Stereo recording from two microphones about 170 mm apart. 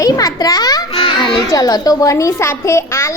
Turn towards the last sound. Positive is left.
turn(degrees=15)  # may be behind; listen again after turning